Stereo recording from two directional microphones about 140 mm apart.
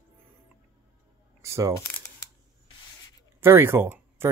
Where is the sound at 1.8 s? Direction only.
20° left (ahead or behind).